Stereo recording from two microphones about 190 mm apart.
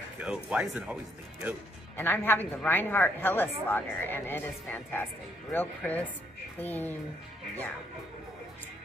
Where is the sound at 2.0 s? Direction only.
10° left (ahead or behind).